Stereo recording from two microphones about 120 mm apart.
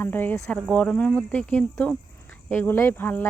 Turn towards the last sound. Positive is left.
turn(degrees=15)  # may be behind; listen again after turning